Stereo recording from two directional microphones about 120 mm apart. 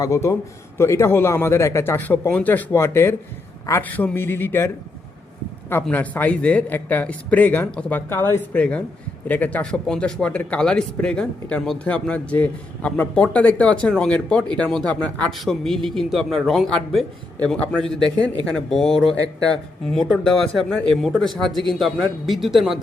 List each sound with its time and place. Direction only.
0.0 s speech: 25° left (ahead or behind)
5.9 s a man's voice: 15° left (ahead or behind)